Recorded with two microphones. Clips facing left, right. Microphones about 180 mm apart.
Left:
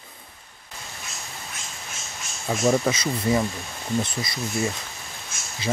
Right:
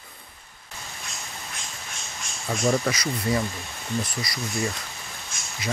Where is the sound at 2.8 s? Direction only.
25° left (ahead or behind).